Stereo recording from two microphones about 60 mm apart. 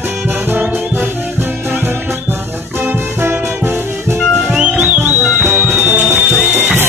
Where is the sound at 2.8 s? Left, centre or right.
Right.